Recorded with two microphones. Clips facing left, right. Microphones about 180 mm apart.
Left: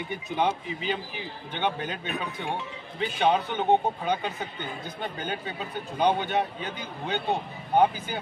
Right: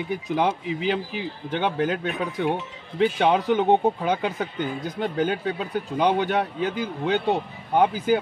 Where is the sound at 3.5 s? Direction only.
90° right.